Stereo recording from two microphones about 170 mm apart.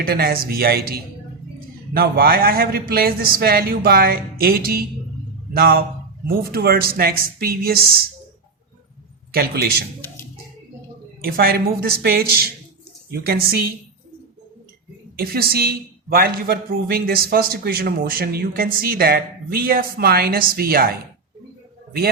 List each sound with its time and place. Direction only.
0.0 s a woman's voice: 65° right (ahead or behind)
11.2 s a woman's voice: 60° right (ahead or behind)
15.2 s a woman's voice: 65° right (ahead or behind)